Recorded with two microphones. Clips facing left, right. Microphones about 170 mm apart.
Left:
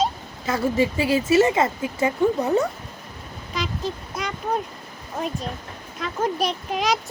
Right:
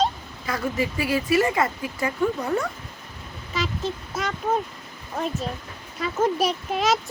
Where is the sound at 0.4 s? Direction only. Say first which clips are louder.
Left 5 dB; 25° left (ahead or behind).